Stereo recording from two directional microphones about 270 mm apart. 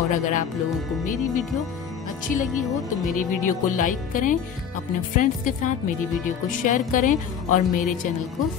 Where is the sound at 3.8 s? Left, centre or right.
Left.